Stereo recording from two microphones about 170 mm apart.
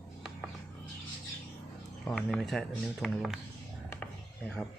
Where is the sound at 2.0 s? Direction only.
5° left (ahead or behind).